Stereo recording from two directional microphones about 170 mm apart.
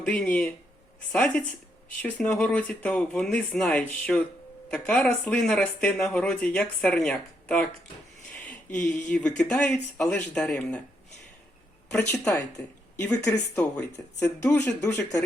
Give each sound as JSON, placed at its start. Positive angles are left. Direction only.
{"t": 0.0, "sound": "speech", "side_deg": 5}
{"t": 8.3, "sound": "a sound", "side_deg": 5}
{"t": 9.0, "sound": "speech", "side_deg": 5}
{"t": 11.9, "sound": "speech", "side_deg": 5}